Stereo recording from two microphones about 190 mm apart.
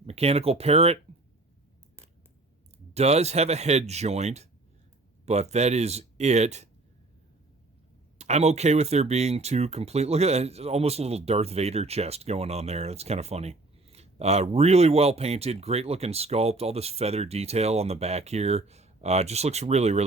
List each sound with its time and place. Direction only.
0.0 s speech: 30° right (ahead or behind)
2.9 s speech: 35° right (ahead or behind)
8.2 s speech: 35° right (ahead or behind)